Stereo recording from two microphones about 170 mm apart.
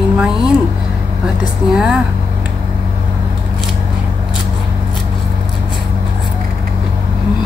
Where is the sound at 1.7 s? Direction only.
5° right (ahead or behind).